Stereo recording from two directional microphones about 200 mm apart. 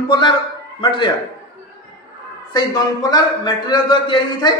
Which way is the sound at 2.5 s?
20° left (ahead or behind).